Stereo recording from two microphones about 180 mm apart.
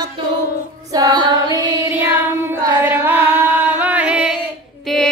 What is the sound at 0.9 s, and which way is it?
Child singing, 20° right (ahead or behind).